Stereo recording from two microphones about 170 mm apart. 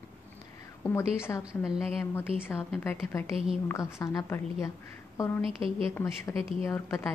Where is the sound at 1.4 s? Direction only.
Centre (ahead or behind).